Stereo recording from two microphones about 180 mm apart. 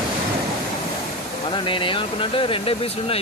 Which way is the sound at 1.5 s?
25° left (ahead or behind).